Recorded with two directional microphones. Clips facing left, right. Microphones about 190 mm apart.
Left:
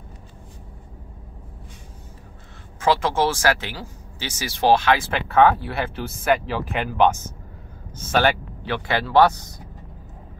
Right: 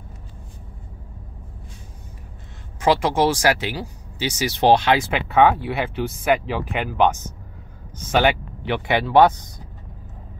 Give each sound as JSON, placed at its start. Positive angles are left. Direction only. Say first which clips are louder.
{"t": 2.8, "sound": "speech", "louder": "right 2 dB", "side_deg": -15}